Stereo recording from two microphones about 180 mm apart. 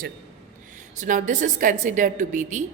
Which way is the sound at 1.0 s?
45° right (ahead or behind).